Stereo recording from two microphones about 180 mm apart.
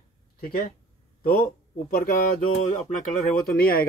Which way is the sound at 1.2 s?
55° left (ahead or behind).